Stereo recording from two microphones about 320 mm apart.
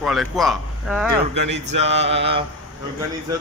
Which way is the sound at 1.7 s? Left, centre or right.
Centre.